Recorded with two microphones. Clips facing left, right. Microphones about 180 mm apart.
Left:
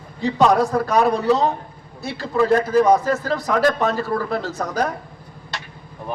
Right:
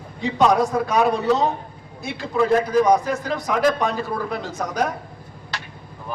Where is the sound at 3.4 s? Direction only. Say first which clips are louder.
Left 1 dB; centre (ahead or behind).